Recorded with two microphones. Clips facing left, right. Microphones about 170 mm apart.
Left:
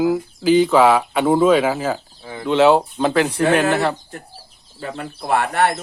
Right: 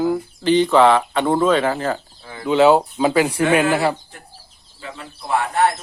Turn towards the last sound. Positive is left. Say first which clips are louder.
# left 1 dB
turn(degrees=65)  # may be behind; listen again after turning